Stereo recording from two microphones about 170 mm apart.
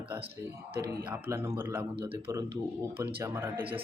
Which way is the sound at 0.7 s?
70° right (ahead or behind).